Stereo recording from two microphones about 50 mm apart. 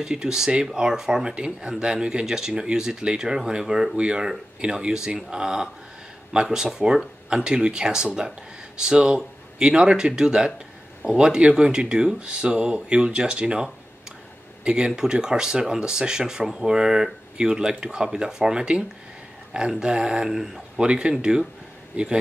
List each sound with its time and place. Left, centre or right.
0.0 s speech: centre
20.8 s a man's voice: right